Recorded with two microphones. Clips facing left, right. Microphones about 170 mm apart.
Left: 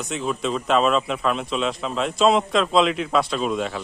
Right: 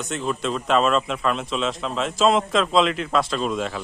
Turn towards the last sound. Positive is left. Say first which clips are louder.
# left 1 dB
turn(degrees=0)  # may be behind; listen again after turning